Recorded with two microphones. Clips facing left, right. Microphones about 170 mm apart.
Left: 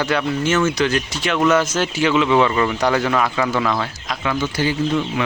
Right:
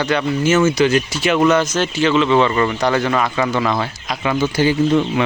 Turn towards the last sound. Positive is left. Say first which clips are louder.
# right 5 dB
turn(degrees=-25)  # may be behind; listen again after turning